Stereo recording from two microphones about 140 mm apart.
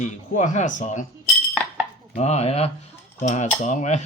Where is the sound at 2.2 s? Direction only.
50° left (ahead or behind).